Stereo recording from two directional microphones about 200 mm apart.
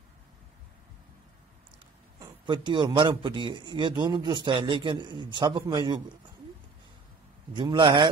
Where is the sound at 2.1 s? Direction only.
20° right (ahead or behind).